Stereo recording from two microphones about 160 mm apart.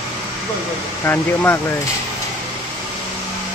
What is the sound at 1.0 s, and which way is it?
Speech, 15° left (ahead or behind).